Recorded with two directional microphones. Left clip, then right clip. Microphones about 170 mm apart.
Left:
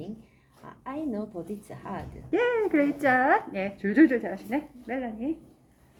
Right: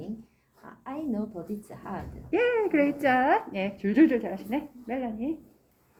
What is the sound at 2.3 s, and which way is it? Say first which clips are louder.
A woman's voice: even; 5° left (ahead or behind).